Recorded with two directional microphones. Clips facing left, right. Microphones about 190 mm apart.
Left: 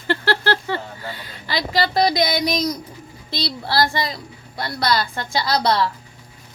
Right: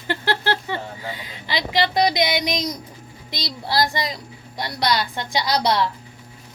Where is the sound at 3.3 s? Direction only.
15° right (ahead or behind).